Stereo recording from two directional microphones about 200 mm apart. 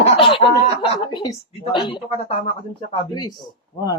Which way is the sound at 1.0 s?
20° left (ahead or behind).